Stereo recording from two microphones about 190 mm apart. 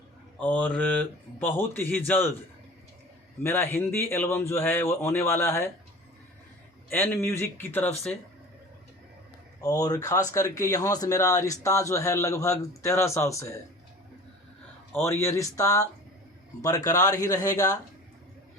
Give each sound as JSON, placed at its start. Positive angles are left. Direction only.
{"t": 0.3, "sound": "a man's voice", "side_deg": 10}
{"t": 3.4, "sound": "a man's voice", "side_deg": 15}
{"t": 6.9, "sound": "a man's voice", "side_deg": 10}
{"t": 9.6, "sound": "a man's voice", "side_deg": 20}
{"t": 14.9, "sound": "a man's voice", "side_deg": 15}